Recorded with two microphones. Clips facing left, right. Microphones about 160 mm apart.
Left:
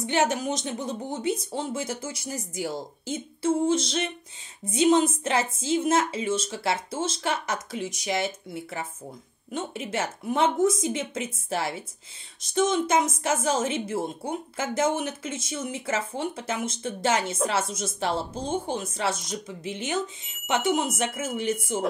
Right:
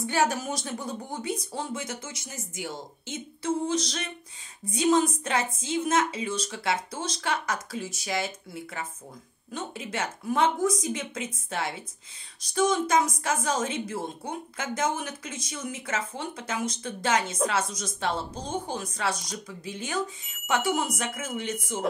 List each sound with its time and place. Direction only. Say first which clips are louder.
0.0 s a woman's voice: left 2 dB; 20° left (ahead or behind)